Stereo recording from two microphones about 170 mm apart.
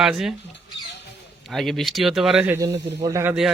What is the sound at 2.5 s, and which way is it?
Speech, 15° right (ahead or behind).